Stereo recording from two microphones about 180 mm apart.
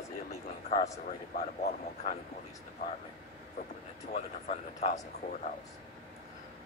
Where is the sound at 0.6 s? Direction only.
40° left (ahead or behind).